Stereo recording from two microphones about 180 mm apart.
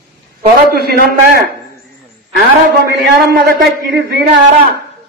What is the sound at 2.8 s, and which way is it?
A man's voice, 65° right (ahead or behind).